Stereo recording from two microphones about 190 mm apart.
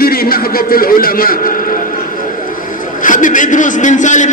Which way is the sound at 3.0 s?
45° left (ahead or behind).